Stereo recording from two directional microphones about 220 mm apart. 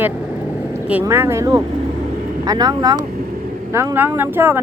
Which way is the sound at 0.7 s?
10° right (ahead or behind).